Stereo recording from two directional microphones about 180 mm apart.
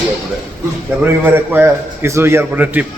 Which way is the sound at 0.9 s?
10° right (ahead or behind).